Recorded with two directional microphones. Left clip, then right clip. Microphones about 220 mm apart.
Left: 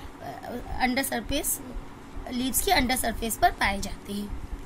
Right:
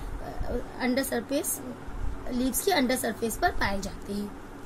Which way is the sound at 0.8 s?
55° left (ahead or behind).